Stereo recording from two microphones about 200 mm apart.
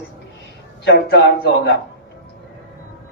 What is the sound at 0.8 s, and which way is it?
Speech, 55° left (ahead or behind).